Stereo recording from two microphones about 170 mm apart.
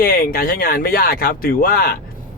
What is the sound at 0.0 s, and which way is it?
Speech, 60° left (ahead or behind).